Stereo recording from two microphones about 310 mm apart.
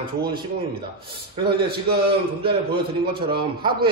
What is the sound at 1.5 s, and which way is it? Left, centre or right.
Speech, right.